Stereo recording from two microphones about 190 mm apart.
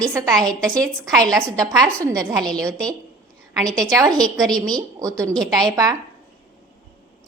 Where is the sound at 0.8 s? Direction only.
20° right (ahead or behind).